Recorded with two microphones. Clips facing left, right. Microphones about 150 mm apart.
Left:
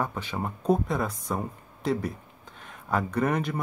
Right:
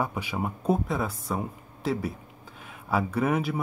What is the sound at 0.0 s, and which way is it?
Speech, 10° right (ahead or behind).